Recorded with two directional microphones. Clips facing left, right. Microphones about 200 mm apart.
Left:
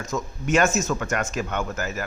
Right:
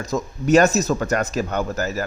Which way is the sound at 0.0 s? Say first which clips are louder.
Right 5 dB; 35° right (ahead or behind).